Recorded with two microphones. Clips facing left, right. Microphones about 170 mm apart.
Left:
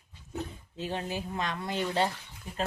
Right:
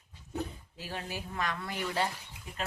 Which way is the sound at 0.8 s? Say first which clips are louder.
Left 6 dB; 20° left (ahead or behind).